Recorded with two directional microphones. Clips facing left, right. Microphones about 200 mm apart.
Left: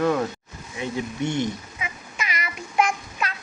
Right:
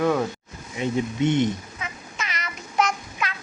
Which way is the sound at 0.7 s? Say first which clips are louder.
Right 4 dB; 20° right (ahead or behind).